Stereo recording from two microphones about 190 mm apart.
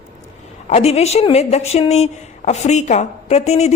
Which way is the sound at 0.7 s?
35° left (ahead or behind).